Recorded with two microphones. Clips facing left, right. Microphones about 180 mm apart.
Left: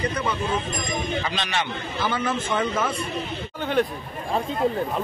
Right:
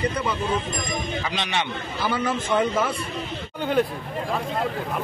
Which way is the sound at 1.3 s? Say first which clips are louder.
Even; 15° right (ahead or behind).